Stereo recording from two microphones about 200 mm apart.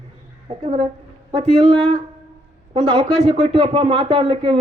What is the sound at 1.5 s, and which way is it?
Speech, 25° right (ahead or behind).